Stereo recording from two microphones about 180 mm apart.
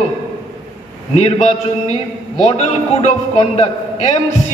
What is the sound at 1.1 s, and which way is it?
A man's voice, 40° left (ahead or behind).